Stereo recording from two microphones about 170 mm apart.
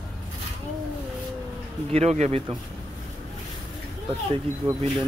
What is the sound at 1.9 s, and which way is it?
Speech, 40° right (ahead or behind).